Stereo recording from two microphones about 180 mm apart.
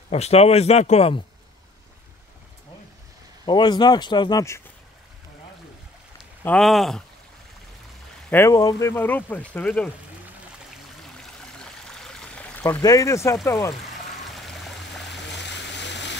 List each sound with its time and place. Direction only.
0.1 s a man's voice: 35° left (ahead or behind)
3.4 s speech: 25° left (ahead or behind)
6.4 s speech: 5° left (ahead or behind)
8.3 s speech: 15° left (ahead or behind)
11.4 s stream: 5° left (ahead or behind)
12.7 s speech: 20° left (ahead or behind)
14.3 s pour: centre (ahead or behind)
15.0 s a sound: 75° left (ahead or behind)